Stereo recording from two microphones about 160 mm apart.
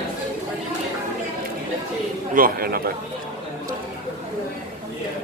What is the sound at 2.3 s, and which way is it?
Speech, 65° right (ahead or behind).